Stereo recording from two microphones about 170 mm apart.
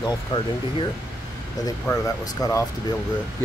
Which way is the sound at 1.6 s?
20° left (ahead or behind).